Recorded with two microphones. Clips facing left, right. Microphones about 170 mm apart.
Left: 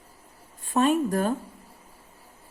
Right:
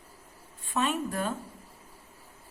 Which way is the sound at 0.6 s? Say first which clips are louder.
Left 7 dB; 40° left (ahead or behind).